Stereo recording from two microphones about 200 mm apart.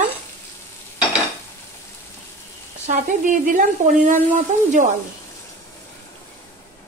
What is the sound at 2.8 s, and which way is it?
A woman's voice, 40° right (ahead or behind).